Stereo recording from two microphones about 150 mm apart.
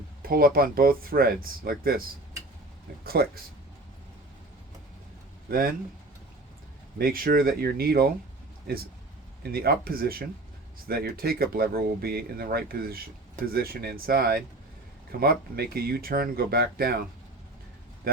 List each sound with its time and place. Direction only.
0.2 s speech: 80° right
3.0 s speech: 90° right
5.5 s speech: 75° right (ahead or behind)
7.0 s speech: 75° right (ahead or behind); by 17.0 s 90° right